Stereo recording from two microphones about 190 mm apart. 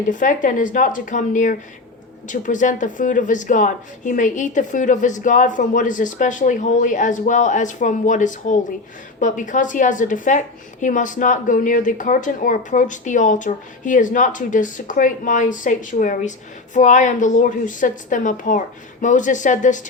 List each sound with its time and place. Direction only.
0.1 s a woman's voice: 40° left (ahead or behind)